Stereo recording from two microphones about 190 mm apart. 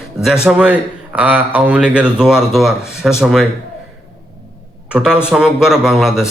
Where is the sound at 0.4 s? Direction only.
5° right (ahead or behind).